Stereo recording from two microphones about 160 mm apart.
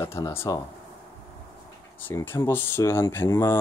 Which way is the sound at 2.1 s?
15° left (ahead or behind).